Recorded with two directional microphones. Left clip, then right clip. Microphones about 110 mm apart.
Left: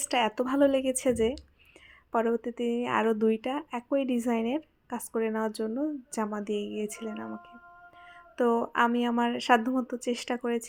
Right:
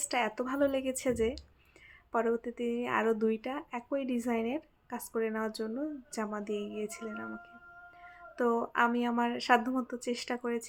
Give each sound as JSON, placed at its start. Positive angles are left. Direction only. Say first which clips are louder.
{"t": 0.0, "sound": "speech", "louder": "left 5 dB", "side_deg": 40}
{"t": 8.4, "sound": "speech", "louder": "left 4 dB", "side_deg": 35}